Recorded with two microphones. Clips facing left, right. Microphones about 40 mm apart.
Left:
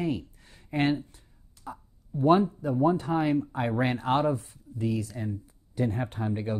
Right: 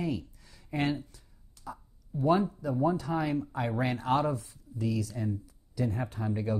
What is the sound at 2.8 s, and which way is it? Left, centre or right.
Speech, left.